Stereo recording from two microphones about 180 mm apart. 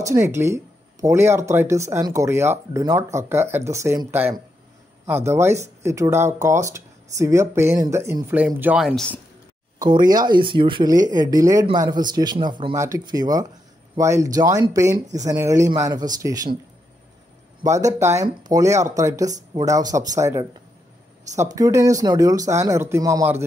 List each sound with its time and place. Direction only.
0.0 s speech: 15° right (ahead or behind)
9.8 s speech: 25° right (ahead or behind)
17.6 s speech: 15° right (ahead or behind)